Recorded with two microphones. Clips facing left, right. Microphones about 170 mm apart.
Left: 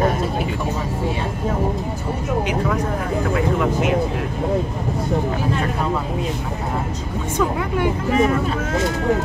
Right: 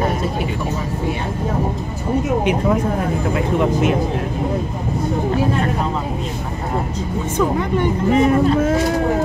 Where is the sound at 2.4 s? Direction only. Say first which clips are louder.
Right 4 dB; 25° right (ahead or behind).